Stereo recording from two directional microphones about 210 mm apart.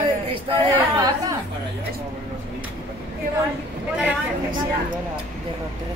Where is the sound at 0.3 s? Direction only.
20° right (ahead or behind).